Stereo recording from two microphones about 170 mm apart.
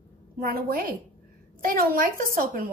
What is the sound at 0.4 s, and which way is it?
A woman's voice, 60° right (ahead or behind).